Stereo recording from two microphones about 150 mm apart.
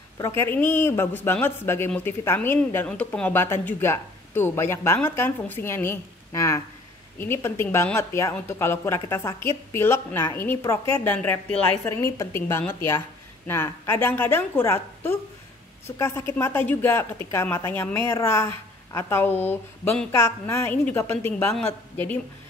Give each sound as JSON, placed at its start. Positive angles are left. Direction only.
{"t": 0.2, "sound": "speech", "side_deg": 15}